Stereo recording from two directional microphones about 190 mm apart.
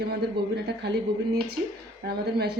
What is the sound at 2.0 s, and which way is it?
Speech, 60° right (ahead or behind).